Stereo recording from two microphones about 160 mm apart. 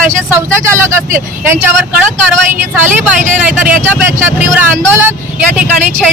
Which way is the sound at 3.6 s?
10° right (ahead or behind).